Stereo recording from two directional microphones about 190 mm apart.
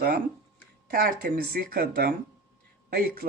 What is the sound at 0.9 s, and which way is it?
Speech, 50° right (ahead or behind).